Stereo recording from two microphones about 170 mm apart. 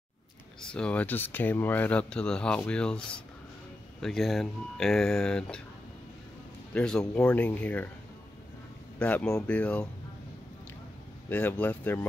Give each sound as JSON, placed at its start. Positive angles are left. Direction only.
{"t": 0.6, "sound": "speech", "side_deg": 5}
{"t": 6.7, "sound": "speech", "side_deg": 5}
{"t": 9.0, "sound": "speech", "side_deg": 5}
{"t": 11.2, "sound": "speech", "side_deg": 10}